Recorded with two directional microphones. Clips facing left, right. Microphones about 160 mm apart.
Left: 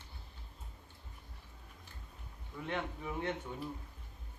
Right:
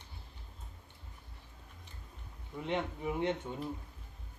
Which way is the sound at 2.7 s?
20° right (ahead or behind).